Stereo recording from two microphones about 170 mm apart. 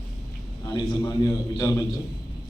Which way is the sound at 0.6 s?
25° left (ahead or behind).